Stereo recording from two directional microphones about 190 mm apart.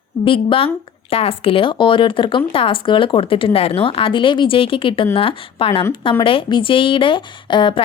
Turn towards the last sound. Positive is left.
turn(degrees=25)  # may be behind; listen again after turning